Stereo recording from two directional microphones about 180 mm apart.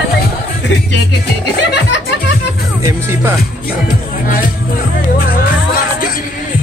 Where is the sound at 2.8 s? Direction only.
15° right (ahead or behind).